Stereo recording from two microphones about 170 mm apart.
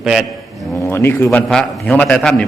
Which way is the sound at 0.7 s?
15° left (ahead or behind).